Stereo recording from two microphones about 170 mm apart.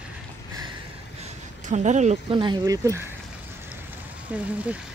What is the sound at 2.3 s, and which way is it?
Speech, 25° right (ahead or behind).